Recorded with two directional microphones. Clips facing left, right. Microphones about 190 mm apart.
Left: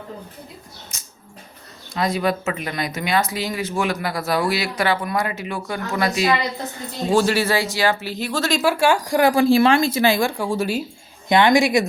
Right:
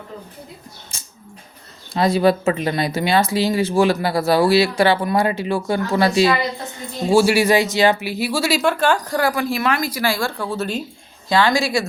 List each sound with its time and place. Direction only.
0.9 s speech: 30° right (ahead or behind)
7.1 s speech: 10° right (ahead or behind)
8.6 s a woman's voice: 10° left (ahead or behind)
9.3 s speech: 30° left (ahead or behind); by 10.8 s 10° left (ahead or behind)
11.3 s speech: 20° left (ahead or behind)